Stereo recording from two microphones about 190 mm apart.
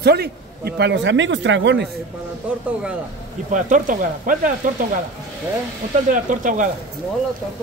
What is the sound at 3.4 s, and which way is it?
Speech, 45° right (ahead or behind).